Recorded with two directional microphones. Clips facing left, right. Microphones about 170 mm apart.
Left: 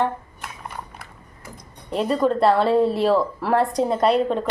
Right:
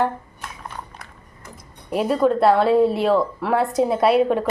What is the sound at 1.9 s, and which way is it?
A woman's voice, 5° right (ahead or behind).